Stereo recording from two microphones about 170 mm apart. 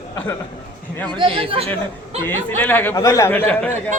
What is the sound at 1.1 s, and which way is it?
Speech, 30° right (ahead or behind).